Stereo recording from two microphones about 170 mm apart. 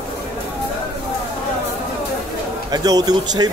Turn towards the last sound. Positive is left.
turn(degrees=-25)  # may be behind; listen again after turning